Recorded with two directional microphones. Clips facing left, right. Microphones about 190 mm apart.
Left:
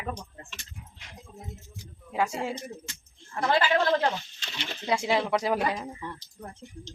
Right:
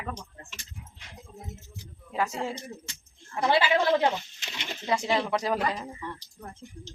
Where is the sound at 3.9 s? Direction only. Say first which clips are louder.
Right 2 dB; 10° right (ahead or behind).